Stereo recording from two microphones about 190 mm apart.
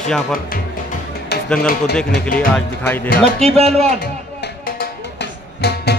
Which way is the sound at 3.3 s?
35° right (ahead or behind).